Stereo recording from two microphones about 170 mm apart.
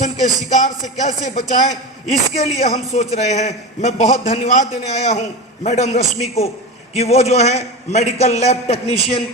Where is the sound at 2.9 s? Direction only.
40° left (ahead or behind).